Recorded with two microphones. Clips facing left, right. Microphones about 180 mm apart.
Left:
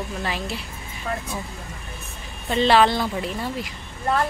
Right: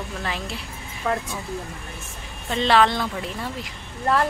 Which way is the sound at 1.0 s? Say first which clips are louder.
Right 4 dB; 65° right (ahead or behind).